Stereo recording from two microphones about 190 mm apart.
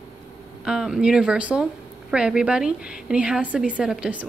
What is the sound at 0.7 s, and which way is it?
A woman's voice, 5° right (ahead or behind).